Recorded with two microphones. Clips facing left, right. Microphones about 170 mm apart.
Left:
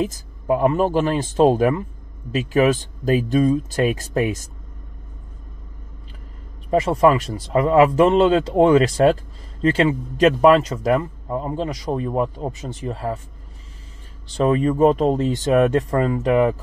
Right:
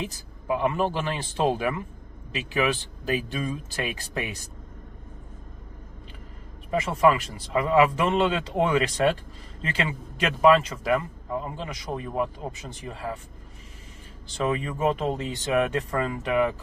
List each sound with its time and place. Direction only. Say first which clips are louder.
0.0 s speech: left 10 dB; 45° left (ahead or behind)
6.7 s speech: left 6 dB; 40° left (ahead or behind)
14.3 s speech: left 9 dB; 35° left (ahead or behind)